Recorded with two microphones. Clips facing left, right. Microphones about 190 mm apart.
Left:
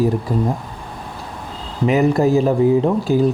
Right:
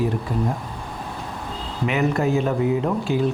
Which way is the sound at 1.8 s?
35° left (ahead or behind).